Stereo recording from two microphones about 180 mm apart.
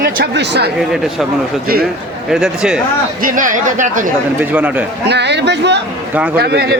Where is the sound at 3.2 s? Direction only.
45° right (ahead or behind).